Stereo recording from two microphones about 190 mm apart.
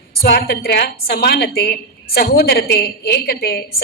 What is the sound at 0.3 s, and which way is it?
A woman's voice, 55° left (ahead or behind).